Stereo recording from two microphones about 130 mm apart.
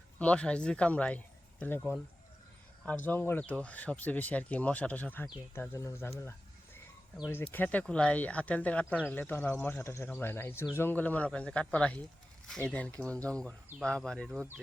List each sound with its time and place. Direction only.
0.2 s speech: 10° left (ahead or behind)
7.5 s speech: 15° left (ahead or behind)
9.8 s speech: 20° left (ahead or behind); by 14.4 s 5° left (ahead or behind)